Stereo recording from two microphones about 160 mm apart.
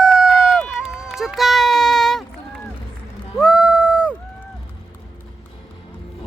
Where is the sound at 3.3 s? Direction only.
Centre (ahead or behind).